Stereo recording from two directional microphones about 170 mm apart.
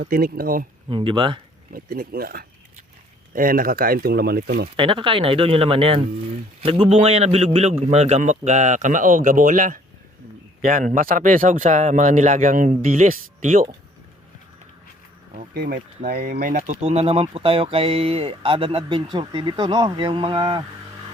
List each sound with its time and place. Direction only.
0.0 s speech: 60° right (ahead or behind)
0.9 s speech: 30° right (ahead or behind)
1.7 s speech: 60° right (ahead or behind)
4.8 s a man's voice: 30° right (ahead or behind); by 13.7 s 55° right (ahead or behind)
15.5 s speech: 60° right (ahead or behind); by 20.6 s 25° right (ahead or behind)